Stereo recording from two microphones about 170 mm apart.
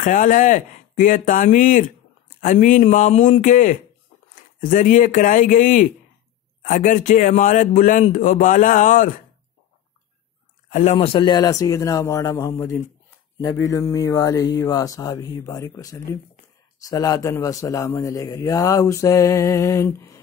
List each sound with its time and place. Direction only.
0.0 s speech: 50° left (ahead or behind)
10.7 s speech: 45° left (ahead or behind)
11.1 s a man's voice: 25° left (ahead or behind)